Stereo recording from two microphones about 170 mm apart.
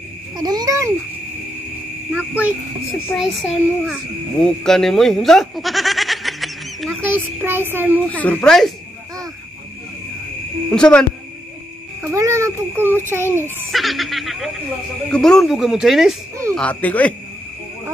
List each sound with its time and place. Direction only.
0.4 s babbling: 25° right (ahead or behind)
2.1 s a sound: 10° right (ahead or behind)
3.2 s speech: centre (ahead or behind)
7.0 s a sound: 10° right (ahead or behind)
8.1 s speech: 10° left (ahead or behind)
10.7 s speech: 5° left (ahead or behind)
12.0 s a child's voice: 15° right (ahead or behind)
13.7 s speech: centre (ahead or behind)
16.5 s speech: 10° left (ahead or behind)